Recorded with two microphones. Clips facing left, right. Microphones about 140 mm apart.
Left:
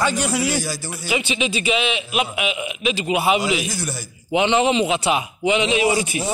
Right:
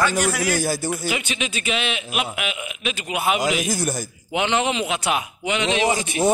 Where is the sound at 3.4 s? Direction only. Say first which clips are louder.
Right 1 dB; 50° right (ahead or behind).